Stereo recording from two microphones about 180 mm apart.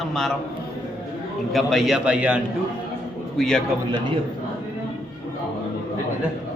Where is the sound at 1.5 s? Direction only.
Centre (ahead or behind).